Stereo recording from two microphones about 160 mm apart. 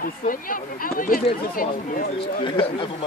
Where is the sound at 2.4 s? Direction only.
30° left (ahead or behind).